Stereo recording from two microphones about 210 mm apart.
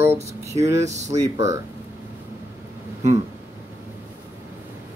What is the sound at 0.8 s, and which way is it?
Speech, 35° right (ahead or behind).